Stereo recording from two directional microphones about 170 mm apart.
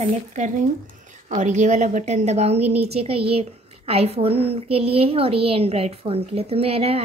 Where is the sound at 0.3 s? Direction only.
45° right (ahead or behind).